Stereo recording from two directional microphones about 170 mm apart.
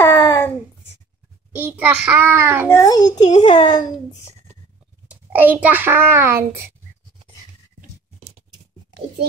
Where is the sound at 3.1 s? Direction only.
45° left (ahead or behind).